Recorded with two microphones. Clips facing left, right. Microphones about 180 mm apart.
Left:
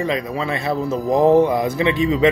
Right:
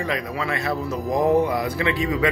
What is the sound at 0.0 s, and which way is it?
Speech, 25° left (ahead or behind).